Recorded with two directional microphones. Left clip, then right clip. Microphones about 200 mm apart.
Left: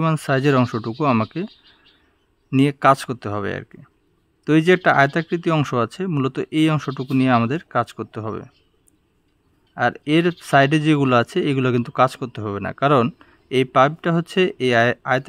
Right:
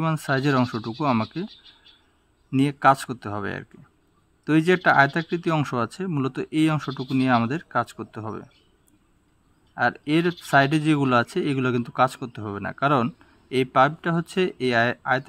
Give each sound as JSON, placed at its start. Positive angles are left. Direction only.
{"t": 0.0, "sound": "speech", "side_deg": 30}
{"t": 2.5, "sound": "speech", "side_deg": 30}
{"t": 9.8, "sound": "speech", "side_deg": 30}